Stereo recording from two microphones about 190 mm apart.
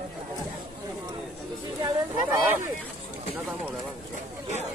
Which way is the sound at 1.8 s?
20° right (ahead or behind).